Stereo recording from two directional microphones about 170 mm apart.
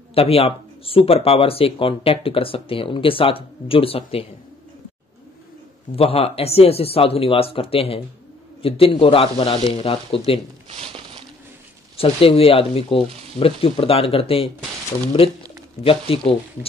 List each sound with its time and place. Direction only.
0.1 s speech: 35° left (ahead or behind)
5.9 s speech: 35° left (ahead or behind)
10.7 s a sound: 35° right (ahead or behind)
12.0 s speech: 35° left (ahead or behind)
15.8 s speech: 35° left (ahead or behind)